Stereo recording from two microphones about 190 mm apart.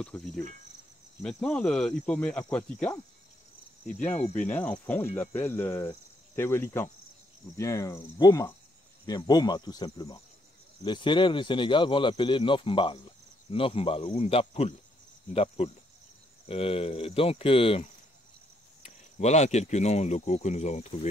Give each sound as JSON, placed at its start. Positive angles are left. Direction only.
{"t": 0.0, "sound": "cricket", "side_deg": 5}
{"t": 4.2, "sound": "speech", "side_deg": 40}
{"t": 4.5, "sound": "cricket", "side_deg": 5}
{"t": 9.0, "sound": "speech", "side_deg": 20}
{"t": 19.1, "sound": "speech", "side_deg": 35}